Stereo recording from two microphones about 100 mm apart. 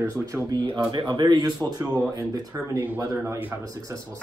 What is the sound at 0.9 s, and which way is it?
Speech, 50° right (ahead or behind).